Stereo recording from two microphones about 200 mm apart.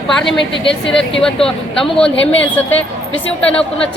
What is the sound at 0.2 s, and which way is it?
Speech, centre (ahead or behind).